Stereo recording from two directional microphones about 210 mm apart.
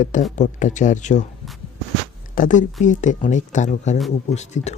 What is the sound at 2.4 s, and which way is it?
Speech, 35° left (ahead or behind).